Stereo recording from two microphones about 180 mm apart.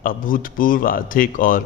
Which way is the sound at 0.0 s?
50° left (ahead or behind).